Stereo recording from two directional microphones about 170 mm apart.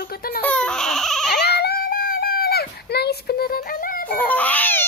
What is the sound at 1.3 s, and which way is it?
Baby cry, 75° left (ahead or behind).